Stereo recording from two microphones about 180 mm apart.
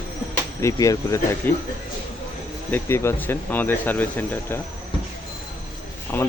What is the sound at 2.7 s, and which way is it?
Speech, 10° left (ahead or behind).